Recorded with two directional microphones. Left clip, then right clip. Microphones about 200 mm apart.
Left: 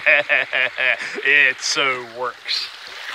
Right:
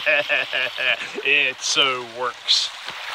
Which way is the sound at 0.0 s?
5° left (ahead or behind).